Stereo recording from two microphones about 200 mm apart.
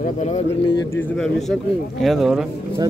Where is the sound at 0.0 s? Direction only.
35° left (ahead or behind).